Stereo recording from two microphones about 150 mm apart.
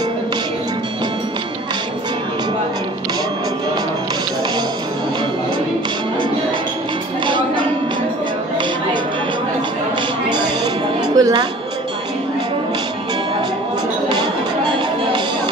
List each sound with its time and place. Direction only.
7.2 s music: 30° right (ahead or behind)
10.3 s music: 30° right (ahead or behind)
14.0 s music: 30° right (ahead or behind)